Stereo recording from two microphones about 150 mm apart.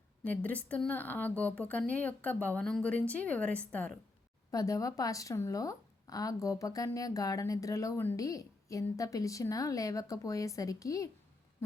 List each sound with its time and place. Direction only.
0.3 s a woman's voice: 10° left (ahead or behind)
4.5 s a woman's voice: 25° left (ahead or behind)